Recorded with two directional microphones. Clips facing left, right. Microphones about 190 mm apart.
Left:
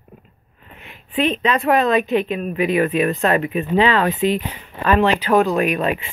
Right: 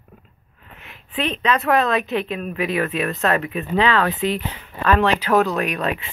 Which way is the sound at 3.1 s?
20° left (ahead or behind).